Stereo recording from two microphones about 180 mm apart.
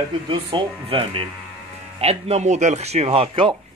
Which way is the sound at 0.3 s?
30° right (ahead or behind).